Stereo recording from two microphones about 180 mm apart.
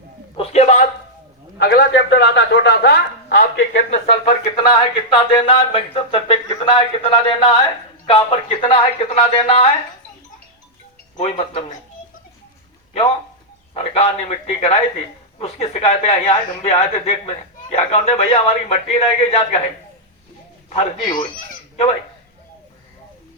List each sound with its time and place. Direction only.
0.3 s a sound: 40° left (ahead or behind)
1.5 s a man's voice: 65° left (ahead or behind)
3.9 s speech: 30° left (ahead or behind)
11.2 s speech: 30° left (ahead or behind)
13.7 s speech: 35° left (ahead or behind)
21.2 s speech: 40° left (ahead or behind)